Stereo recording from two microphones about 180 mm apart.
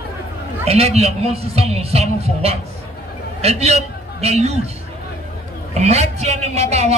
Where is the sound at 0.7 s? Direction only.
35° right (ahead or behind).